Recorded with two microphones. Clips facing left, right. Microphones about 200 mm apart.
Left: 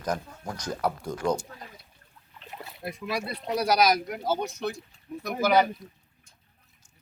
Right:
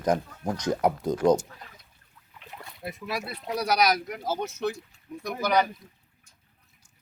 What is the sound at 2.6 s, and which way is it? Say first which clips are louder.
Speech: left 1 dB; centre (ahead or behind).